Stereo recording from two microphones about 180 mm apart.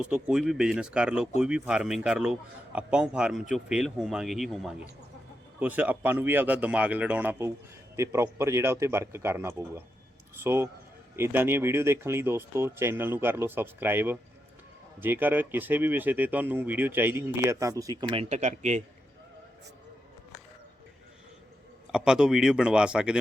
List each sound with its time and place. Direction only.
0.0 s a man's voice: 5° right (ahead or behind)
18.2 s speech: 40° right (ahead or behind)
21.9 s a man's voice: 5° right (ahead or behind)